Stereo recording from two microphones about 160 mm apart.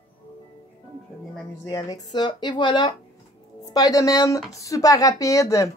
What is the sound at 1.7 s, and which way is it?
A woman's voice, 25° left (ahead or behind).